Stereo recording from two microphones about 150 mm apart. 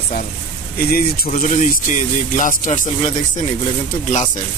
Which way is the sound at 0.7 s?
85° left.